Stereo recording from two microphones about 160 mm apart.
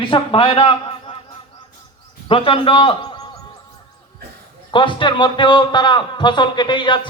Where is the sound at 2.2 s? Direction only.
35° left (ahead or behind).